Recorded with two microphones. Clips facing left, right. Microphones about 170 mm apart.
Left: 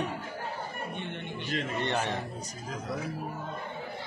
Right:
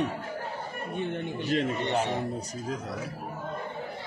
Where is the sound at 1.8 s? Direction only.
15° right (ahead or behind).